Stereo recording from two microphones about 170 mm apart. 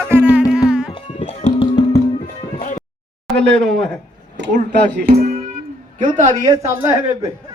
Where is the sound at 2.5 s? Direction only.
50° left (ahead or behind).